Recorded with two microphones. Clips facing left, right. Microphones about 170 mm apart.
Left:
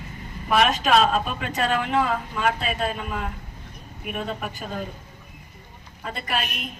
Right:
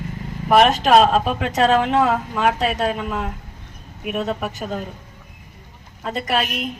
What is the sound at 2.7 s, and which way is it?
Speech, 80° right.